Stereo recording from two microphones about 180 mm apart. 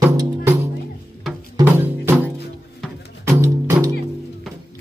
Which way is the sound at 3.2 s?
15° right (ahead or behind).